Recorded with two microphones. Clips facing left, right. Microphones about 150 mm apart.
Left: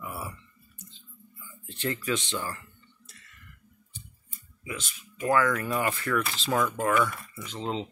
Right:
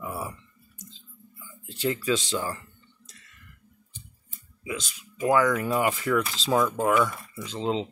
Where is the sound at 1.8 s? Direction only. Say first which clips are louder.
Right 4 dB; 10° right (ahead or behind).